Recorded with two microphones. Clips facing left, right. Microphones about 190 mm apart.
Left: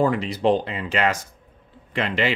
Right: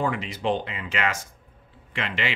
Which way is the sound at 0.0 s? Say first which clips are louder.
Left 6 dB; 35° left (ahead or behind).